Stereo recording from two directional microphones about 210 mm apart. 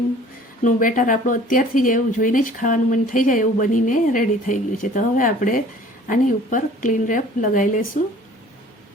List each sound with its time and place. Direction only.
0.6 s speech: 40° left (ahead or behind)